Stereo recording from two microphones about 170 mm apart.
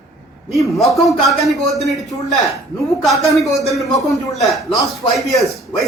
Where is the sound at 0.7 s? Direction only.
Centre (ahead or behind).